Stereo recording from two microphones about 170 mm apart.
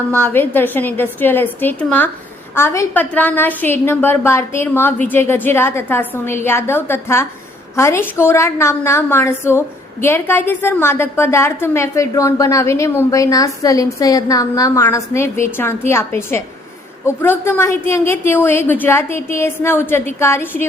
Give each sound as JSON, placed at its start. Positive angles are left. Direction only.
{"t": 0.1, "sound": "a woman's voice", "side_deg": 10}